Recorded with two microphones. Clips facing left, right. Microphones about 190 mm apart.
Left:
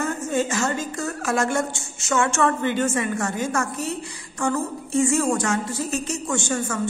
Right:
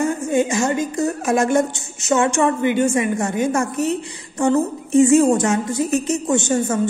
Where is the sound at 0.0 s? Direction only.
15° right (ahead or behind).